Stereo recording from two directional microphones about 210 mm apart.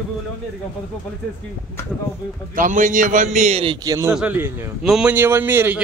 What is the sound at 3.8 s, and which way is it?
Speech, 15° right (ahead or behind).